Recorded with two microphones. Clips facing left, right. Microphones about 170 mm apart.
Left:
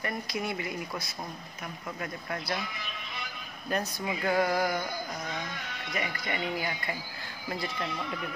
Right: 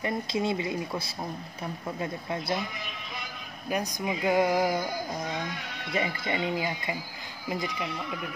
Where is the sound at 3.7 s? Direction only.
15° right (ahead or behind).